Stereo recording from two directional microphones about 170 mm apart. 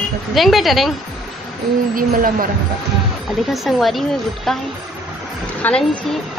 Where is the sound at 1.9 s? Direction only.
55° right (ahead or behind).